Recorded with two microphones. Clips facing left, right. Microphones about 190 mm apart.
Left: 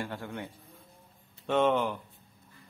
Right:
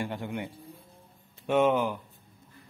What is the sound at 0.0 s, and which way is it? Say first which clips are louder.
Speech: right 4 dB; 15° right (ahead or behind).